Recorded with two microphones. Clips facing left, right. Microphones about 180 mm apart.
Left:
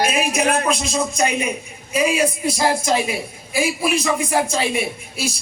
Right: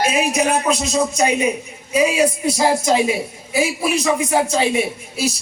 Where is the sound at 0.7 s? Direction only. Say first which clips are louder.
Right 3 dB; 20° right (ahead or behind).